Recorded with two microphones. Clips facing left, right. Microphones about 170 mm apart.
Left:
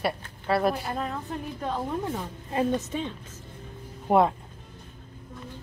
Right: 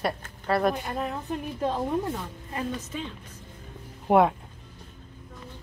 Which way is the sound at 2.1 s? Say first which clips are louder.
Left 4 dB; 25° left (ahead or behind).